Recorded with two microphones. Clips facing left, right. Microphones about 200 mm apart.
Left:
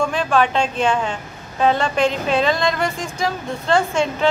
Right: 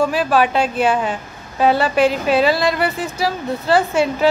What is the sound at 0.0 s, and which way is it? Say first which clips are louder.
A man's voice: right 2 dB; 5° right (ahead or behind).